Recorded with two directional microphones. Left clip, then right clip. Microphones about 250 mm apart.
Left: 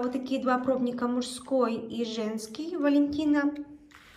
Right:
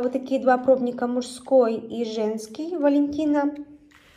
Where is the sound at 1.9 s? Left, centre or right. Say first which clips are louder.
Right 5 dB; left.